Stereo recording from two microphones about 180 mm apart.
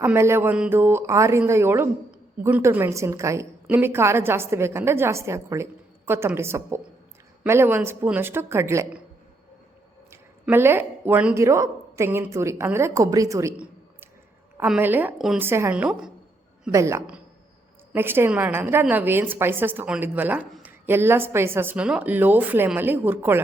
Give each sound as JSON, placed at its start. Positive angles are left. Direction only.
{"t": 0.0, "sound": "speech", "side_deg": -15}
{"t": 10.1, "sound": "speech", "side_deg": -10}
{"t": 14.6, "sound": "speech", "side_deg": -10}
{"t": 16.7, "sound": "speech", "side_deg": -15}